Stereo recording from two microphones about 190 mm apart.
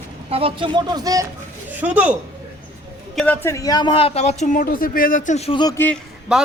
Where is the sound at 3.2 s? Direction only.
10° left (ahead or behind).